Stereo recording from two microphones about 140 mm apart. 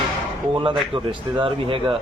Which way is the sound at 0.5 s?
35° right (ahead or behind).